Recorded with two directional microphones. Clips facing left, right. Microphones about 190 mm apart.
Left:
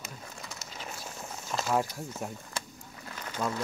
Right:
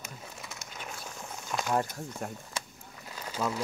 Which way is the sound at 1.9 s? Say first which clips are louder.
Even; 5° left (ahead or behind).